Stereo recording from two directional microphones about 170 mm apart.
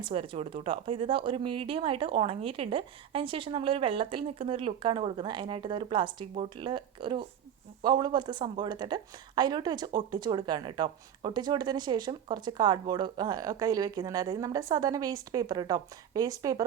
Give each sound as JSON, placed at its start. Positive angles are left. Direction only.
{"t": 0.0, "sound": "speech", "side_deg": -30}